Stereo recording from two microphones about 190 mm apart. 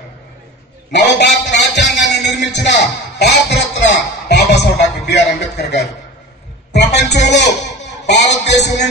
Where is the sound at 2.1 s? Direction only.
65° left (ahead or behind).